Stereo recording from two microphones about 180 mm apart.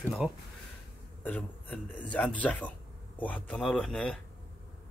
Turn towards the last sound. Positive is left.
turn(degrees=5)  # may be behind; listen again after turning